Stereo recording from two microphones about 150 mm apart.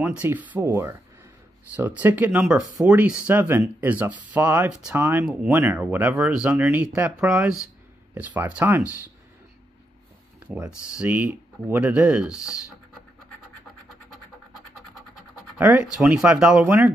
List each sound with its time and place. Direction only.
0.0 s speech: 10° right (ahead or behind)
10.4 s speech: 5° right (ahead or behind)
15.5 s speech: 10° right (ahead or behind)